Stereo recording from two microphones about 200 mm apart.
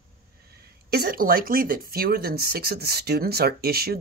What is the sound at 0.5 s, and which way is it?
Speech, 50° right (ahead or behind).